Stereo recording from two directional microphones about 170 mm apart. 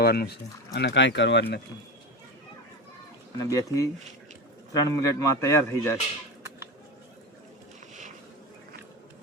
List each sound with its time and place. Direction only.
0.0 s speech: 65° left (ahead or behind)
0.8 s speech: 85° left
3.3 s speech: 20° left (ahead or behind)